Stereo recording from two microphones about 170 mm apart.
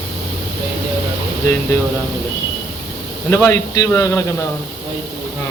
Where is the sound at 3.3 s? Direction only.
15° left (ahead or behind).